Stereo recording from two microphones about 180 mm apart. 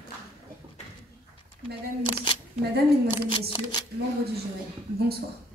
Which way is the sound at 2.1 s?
25° left (ahead or behind).